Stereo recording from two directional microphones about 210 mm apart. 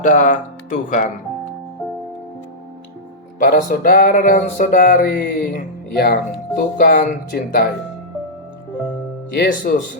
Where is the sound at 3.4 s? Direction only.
40° left (ahead or behind).